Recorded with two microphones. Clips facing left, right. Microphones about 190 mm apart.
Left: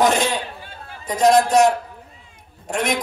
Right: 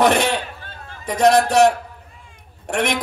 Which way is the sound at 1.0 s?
65° right (ahead or behind).